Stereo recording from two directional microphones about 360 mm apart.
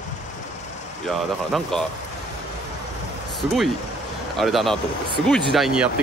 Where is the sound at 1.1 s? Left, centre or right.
Centre.